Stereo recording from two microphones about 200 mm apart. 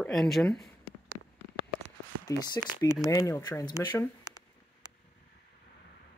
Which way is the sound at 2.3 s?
20° left (ahead or behind).